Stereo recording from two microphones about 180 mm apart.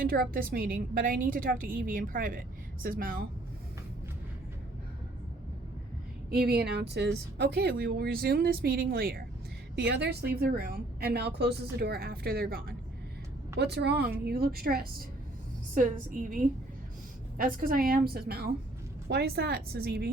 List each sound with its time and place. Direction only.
0.0 s a woman's voice: 55° right (ahead or behind)
6.3 s a woman's voice: 60° right (ahead or behind)
9.7 s a woman's voice: 70° right (ahead or behind)
13.6 s a woman's voice: 65° right (ahead or behind)